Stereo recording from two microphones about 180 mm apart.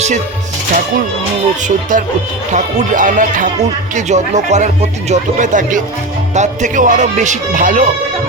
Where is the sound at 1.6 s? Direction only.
45° right (ahead or behind).